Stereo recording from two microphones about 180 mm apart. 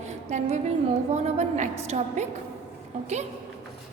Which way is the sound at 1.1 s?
40° right (ahead or behind).